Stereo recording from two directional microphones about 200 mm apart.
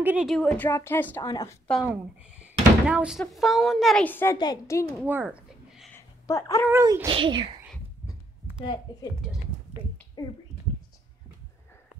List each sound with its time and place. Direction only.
0.0 s a woman's voice: 5° right (ahead or behind); by 1.6 s 15° left (ahead or behind)
1.7 s speech: 5° right (ahead or behind); by 4.8 s 15° left (ahead or behind)
5.0 s a sound: 10° right (ahead or behind)
5.9 s a sound: 15° left (ahead or behind)
6.7 s speech: 15° right (ahead or behind)
10.2 s speech: 20° left (ahead or behind)